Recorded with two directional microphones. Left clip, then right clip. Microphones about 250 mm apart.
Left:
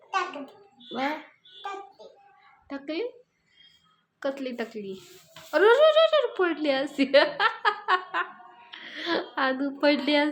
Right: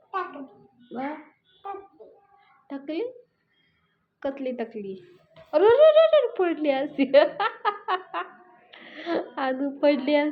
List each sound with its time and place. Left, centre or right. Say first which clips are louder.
0.9 s speech: left 3 dB; centre
2.6 s speech: right 1 dB; centre
4.2 s a woman's voice: right 1 dB; centre
8.7 s a sound: even; centre